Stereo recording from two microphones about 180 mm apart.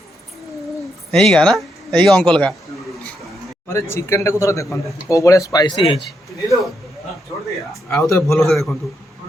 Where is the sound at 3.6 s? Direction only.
15° left (ahead or behind).